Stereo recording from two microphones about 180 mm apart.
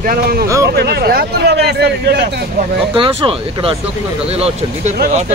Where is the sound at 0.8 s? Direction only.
60° right (ahead or behind).